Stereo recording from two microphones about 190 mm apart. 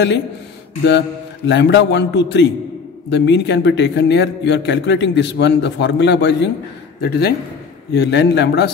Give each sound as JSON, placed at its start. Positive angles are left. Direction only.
{"t": 0.8, "sound": "a man's voice", "side_deg": 70}